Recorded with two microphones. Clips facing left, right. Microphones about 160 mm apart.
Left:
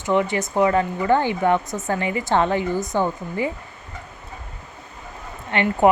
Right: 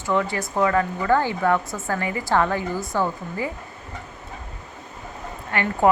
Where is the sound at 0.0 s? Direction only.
20° left (ahead or behind).